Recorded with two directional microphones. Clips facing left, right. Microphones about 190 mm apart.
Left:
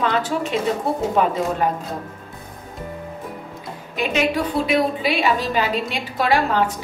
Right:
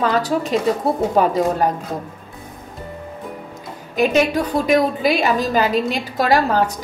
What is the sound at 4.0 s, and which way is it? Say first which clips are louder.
A woman's voice: right 4 dB; 40° right (ahead or behind).